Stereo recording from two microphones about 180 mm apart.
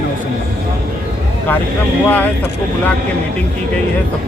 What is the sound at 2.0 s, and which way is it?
Speech, 10° left (ahead or behind).